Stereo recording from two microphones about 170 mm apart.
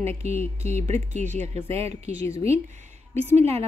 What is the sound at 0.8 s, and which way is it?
Speech, 40° right (ahead or behind).